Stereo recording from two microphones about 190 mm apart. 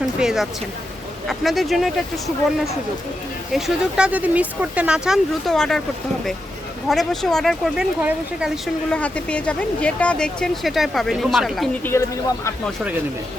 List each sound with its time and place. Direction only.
0.0 s a sound: centre (ahead or behind)
1.3 s speech: centre (ahead or behind)
3.5 s speech: 5° right (ahead or behind)
6.8 s speech: centre (ahead or behind)